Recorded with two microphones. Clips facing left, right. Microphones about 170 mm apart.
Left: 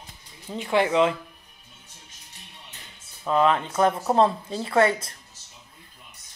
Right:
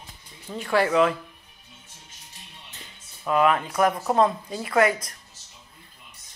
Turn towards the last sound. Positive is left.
turn(degrees=30)  # may be behind; listen again after turning